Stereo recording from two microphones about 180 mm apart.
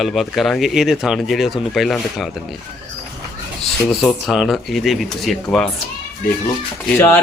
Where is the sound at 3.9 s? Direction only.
Centre (ahead or behind).